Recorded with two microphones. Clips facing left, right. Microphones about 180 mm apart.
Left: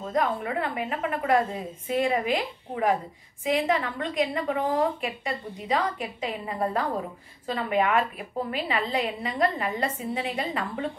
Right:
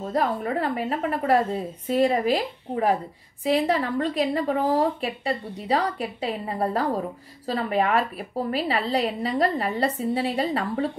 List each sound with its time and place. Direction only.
0.1 s a woman's voice: 35° right (ahead or behind)